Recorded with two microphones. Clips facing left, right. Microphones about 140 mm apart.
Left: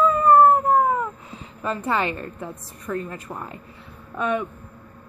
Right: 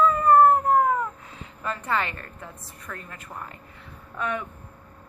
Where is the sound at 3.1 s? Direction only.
30° left (ahead or behind).